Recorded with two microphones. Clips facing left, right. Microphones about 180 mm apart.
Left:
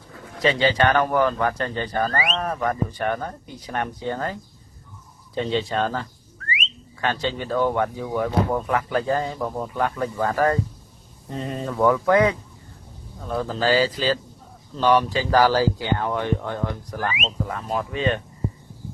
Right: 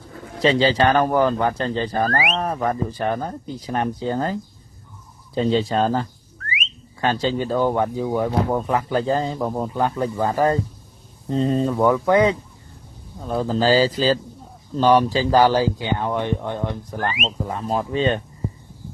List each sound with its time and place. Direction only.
0.4 s speech: 30° right (ahead or behind)
2.0 s speech: 5° right (ahead or behind)
2.3 s speech: 25° right (ahead or behind)
11.7 s speech: 20° right (ahead or behind)